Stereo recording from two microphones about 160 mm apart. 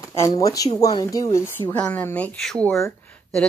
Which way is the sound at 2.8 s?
10° left (ahead or behind).